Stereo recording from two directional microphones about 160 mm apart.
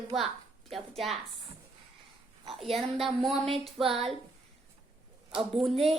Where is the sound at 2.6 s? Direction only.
Centre (ahead or behind).